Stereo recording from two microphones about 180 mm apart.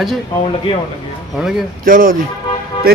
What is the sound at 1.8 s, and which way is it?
Speech, 50° right (ahead or behind).